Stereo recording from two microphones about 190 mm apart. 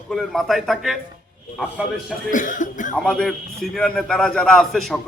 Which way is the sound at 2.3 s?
45° left (ahead or behind).